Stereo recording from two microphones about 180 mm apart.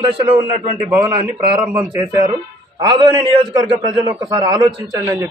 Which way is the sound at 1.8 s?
20° right (ahead or behind).